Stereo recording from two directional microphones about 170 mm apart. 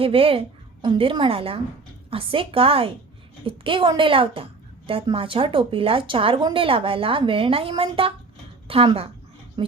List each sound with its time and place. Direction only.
0.0 s a woman's voice: 35° right (ahead or behind)